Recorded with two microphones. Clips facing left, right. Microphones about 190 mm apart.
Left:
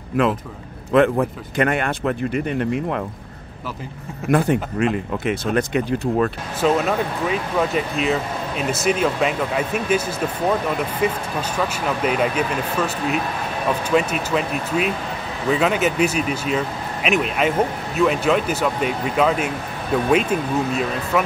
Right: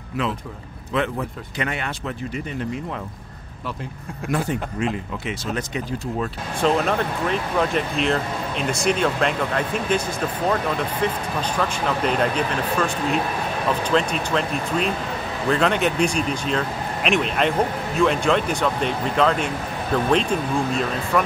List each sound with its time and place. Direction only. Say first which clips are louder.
0.2 s speech: left 6 dB; 50° left (ahead or behind)
4.3 s speech: left 6 dB; 60° left (ahead or behind)
6.6 s speech: left 1 dB; 5° left (ahead or behind)